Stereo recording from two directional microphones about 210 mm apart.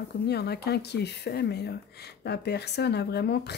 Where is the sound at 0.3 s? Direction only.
50° left (ahead or behind).